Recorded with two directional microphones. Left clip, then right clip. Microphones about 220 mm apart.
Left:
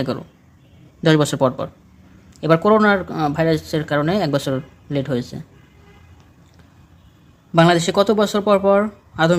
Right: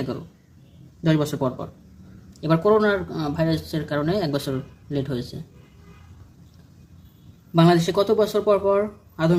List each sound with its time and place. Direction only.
1.0 s speech: 40° left (ahead or behind)
7.5 s speech: 40° left (ahead or behind)